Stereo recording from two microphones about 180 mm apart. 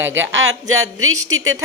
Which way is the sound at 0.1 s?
90° right.